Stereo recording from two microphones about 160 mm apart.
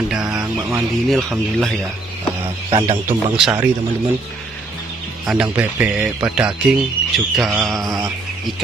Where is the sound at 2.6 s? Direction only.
35° right (ahead or behind).